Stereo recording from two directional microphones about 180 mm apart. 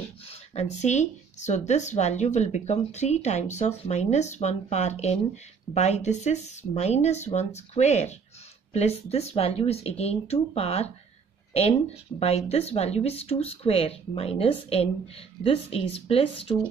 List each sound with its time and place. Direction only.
0.3 s speech: 40° left (ahead or behind)
12.2 s speech: 35° left (ahead or behind)